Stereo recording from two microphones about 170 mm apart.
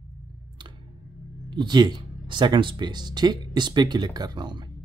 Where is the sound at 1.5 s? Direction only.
25° right (ahead or behind).